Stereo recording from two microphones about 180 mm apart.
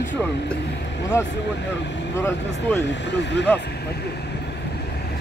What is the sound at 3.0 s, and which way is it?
Speech, 75° left (ahead or behind).